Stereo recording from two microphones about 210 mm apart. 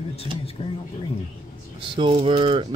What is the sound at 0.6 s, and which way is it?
Speech, 25° left (ahead or behind).